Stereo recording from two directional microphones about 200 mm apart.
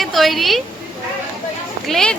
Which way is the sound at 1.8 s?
Centre (ahead or behind).